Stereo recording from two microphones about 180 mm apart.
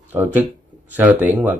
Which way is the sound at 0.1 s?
10° right (ahead or behind).